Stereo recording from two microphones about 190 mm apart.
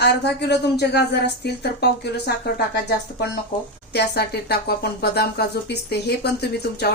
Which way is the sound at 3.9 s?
60° left (ahead or behind).